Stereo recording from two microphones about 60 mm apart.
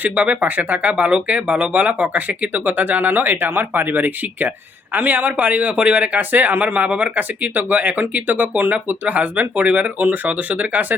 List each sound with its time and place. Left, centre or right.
0.0 s speech: right